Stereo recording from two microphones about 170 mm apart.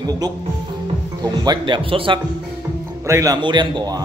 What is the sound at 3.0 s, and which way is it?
Speech, 20° right (ahead or behind).